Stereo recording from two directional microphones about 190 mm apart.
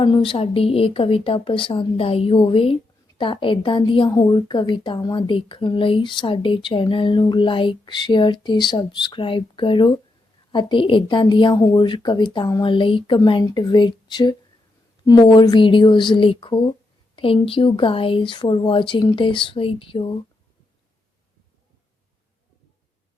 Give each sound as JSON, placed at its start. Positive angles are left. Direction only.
{"t": 0.0, "sound": "a woman's voice", "side_deg": 25}